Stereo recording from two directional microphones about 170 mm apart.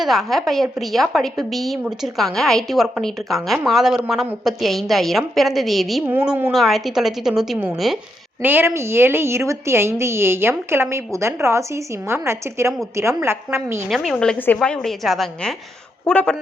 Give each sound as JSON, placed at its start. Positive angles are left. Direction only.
{"t": 0.0, "sound": "a woman's voice", "side_deg": 0}
{"t": 13.9, "sound": "a woman's voice", "side_deg": 0}